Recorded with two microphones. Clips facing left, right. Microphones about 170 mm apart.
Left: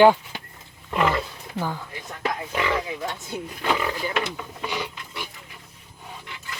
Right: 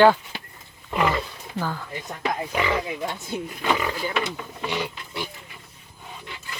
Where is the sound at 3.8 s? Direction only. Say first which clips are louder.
Even; 5° right (ahead or behind).